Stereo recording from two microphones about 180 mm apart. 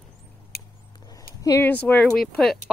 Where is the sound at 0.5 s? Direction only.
60° left (ahead or behind).